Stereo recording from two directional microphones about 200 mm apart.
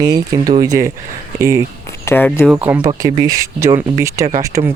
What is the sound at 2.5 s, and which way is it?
Speech, 5° right (ahead or behind).